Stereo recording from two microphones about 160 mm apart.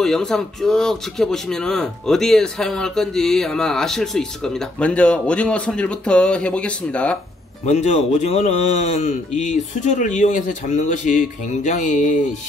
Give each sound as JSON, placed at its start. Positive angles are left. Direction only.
{"t": 0.0, "sound": "speech", "side_deg": 0}
{"t": 7.6, "sound": "speech", "side_deg": 45}